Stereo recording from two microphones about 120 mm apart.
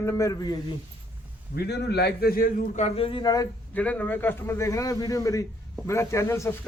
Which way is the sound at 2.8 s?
60° left (ahead or behind).